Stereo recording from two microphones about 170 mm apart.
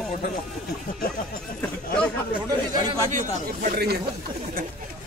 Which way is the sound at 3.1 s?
50° right (ahead or behind).